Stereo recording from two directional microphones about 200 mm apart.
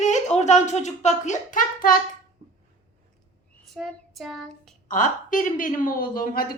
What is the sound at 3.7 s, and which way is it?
Child singing, centre (ahead or behind).